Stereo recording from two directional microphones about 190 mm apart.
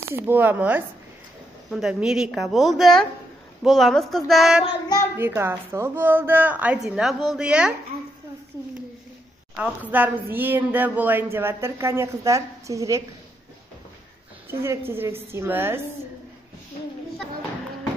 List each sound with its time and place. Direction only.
0.1 s a woman's voice: 10° right (ahead or behind)
4.6 s child singing: 20° left (ahead or behind)
5.1 s a woman's voice: 10° right (ahead or behind)
9.6 s speech: 10° right (ahead or behind)
14.5 s speech: 15° right (ahead or behind)